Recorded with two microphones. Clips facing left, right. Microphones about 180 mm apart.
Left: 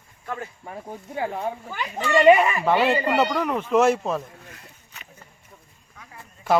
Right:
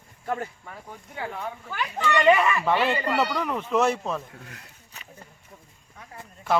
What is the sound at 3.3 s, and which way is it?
Speech, 5° left (ahead or behind).